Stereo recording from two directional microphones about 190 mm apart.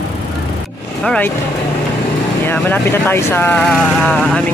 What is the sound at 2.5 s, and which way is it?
Speech, 10° left (ahead or behind).